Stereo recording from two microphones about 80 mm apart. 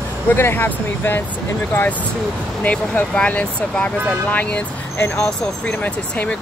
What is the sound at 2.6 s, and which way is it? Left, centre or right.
Speech, centre.